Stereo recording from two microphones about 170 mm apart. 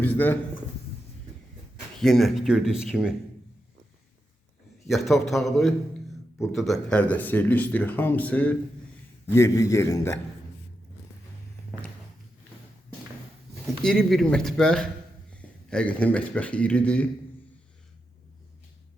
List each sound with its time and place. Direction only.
0.0 s speech: 10° left (ahead or behind)
2.0 s speech: centre (ahead or behind)
4.9 s speech: centre (ahead or behind); by 10.2 s 15° left (ahead or behind)
13.8 s speech: centre (ahead or behind)